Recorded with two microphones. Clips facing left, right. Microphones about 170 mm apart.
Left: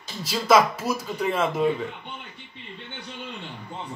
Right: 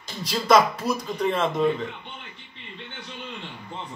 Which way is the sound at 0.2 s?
5° left (ahead or behind).